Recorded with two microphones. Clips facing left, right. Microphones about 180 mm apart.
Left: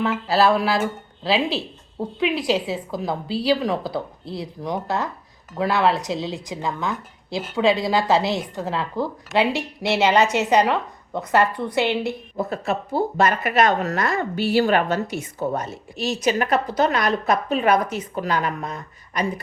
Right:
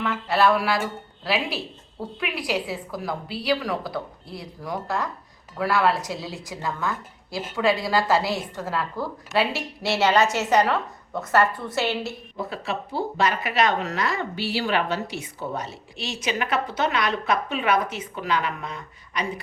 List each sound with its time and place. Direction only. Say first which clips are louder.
0.0 s a woman's voice: left 3 dB; 30° left (ahead or behind)
12.4 s a woman's voice: left 5 dB; 45° left (ahead or behind)